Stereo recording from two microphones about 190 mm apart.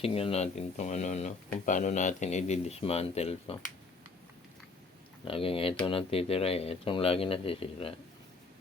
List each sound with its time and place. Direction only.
0.0 s speech: 30° left (ahead or behind)
5.3 s speech: 30° left (ahead or behind)